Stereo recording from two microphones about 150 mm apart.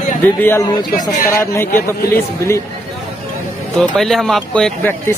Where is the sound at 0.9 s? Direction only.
60° left (ahead or behind).